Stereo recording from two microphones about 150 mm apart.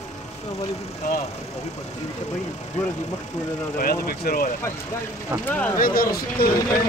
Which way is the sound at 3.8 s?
80° left.